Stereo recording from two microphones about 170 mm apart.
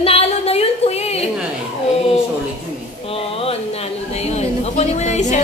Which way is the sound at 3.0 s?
35° left (ahead or behind).